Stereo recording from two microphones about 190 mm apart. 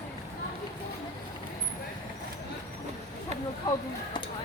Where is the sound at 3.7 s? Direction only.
20° left (ahead or behind).